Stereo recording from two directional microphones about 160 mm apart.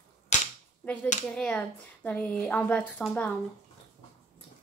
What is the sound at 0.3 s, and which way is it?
Cap gun, 50° left (ahead or behind).